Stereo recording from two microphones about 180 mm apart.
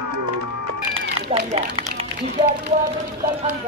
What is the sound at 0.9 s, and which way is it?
Cat, 35° right (ahead or behind).